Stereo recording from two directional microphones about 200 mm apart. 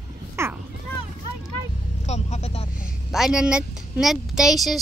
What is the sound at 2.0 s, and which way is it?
Vehicle, 35° left (ahead or behind).